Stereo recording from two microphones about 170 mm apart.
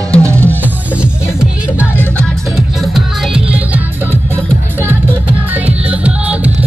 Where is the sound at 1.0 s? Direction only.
5° right (ahead or behind).